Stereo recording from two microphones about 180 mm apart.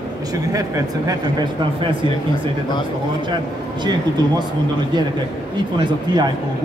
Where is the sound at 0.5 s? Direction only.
20° right (ahead or behind).